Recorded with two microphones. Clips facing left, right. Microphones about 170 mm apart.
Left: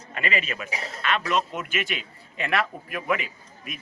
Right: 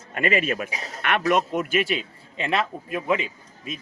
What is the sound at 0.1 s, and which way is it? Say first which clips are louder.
A man's voice: right 6 dB; 50° right (ahead or behind).